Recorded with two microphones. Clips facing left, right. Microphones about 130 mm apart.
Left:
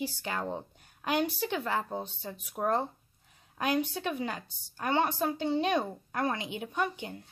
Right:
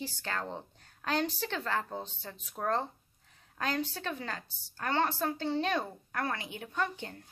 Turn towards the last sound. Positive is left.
turn(degrees=15)  # may be behind; listen again after turning